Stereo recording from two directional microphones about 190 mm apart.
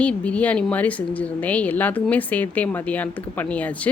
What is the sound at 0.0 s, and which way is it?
Speech, 5° left (ahead or behind).